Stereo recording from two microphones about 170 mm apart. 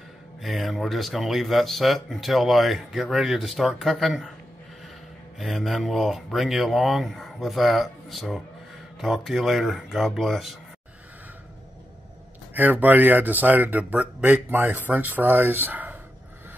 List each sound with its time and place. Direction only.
0.4 s speech: centre (ahead or behind)
5.4 s speech: centre (ahead or behind)
12.5 s speech: 10° right (ahead or behind)